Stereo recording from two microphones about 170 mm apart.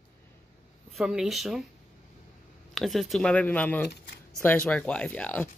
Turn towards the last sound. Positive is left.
turn(degrees=10)  # may be behind; listen again after turning